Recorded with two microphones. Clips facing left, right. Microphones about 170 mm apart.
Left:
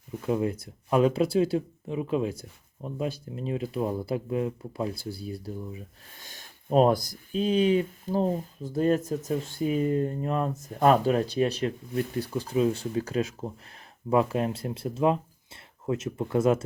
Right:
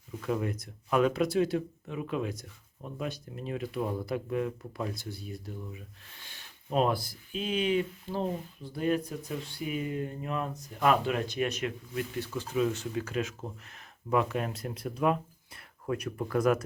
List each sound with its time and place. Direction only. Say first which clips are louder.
0.2 s speech: left 5 dB; 25° left (ahead or behind)
6.1 s speech: left 5 dB; 40° left (ahead or behind); by 16.6 s 25° left (ahead or behind)